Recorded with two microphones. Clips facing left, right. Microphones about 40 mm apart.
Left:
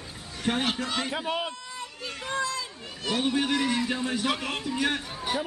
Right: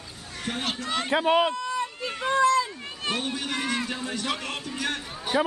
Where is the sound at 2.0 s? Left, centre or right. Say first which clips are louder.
Right 8 dB; right.